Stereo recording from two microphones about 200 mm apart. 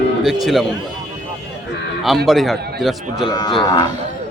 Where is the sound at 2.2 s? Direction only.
Centre (ahead or behind).